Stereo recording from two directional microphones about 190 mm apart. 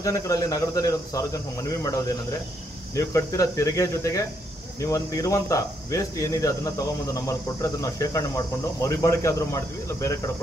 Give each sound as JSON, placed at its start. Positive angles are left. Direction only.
{"t": 0.0, "sound": "speech", "side_deg": 15}
{"t": 3.0, "sound": "speech", "side_deg": 15}